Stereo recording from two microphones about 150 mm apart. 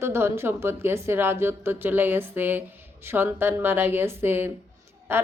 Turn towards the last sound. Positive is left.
turn(degrees=-15)  # may be behind; listen again after turning